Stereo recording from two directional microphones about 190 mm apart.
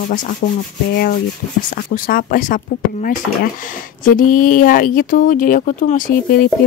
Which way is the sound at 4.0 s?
45° left (ahead or behind).